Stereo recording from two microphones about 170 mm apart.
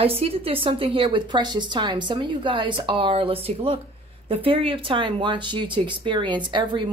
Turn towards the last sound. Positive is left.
turn(degrees=-30)  # may be behind; listen again after turning